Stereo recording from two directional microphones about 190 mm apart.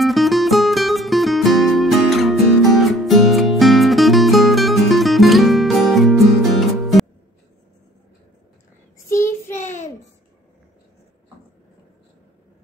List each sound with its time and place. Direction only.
0.0 s music: centre (ahead or behind)
8.9 s child singing: 15° left (ahead or behind)
9.5 s child singing: 40° left (ahead or behind)